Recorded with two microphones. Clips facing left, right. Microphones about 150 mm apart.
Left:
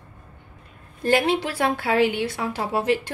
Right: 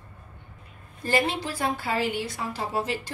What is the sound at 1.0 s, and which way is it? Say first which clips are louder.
A woman's voice: left 5 dB; 65° left (ahead or behind).